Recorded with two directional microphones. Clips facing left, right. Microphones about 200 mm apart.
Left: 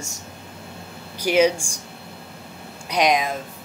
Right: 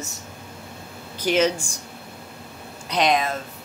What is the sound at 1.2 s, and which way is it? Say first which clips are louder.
Speech: left 3 dB; 10° left (ahead or behind).